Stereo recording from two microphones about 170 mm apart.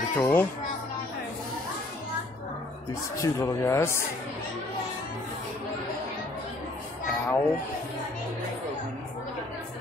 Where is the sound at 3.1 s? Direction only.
15° left (ahead or behind).